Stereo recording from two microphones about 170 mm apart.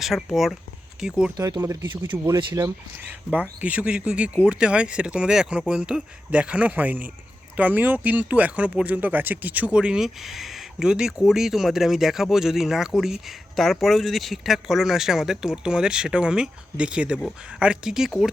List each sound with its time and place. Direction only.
0.0 s speech: centre (ahead or behind)
1.4 s speech: 20° right (ahead or behind)
3.1 s speech: 10° right (ahead or behind)